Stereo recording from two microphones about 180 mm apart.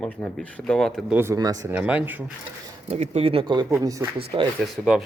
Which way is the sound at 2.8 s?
35° right (ahead or behind).